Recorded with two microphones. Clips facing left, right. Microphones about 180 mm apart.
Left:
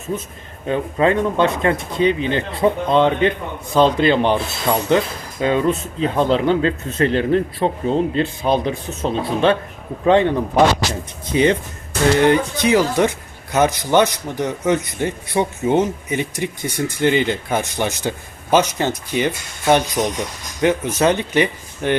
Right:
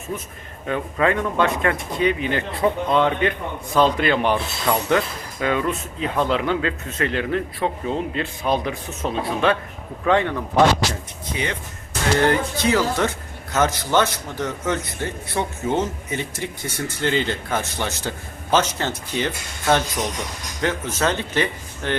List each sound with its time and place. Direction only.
0.7 s speech: 25° left (ahead or behind)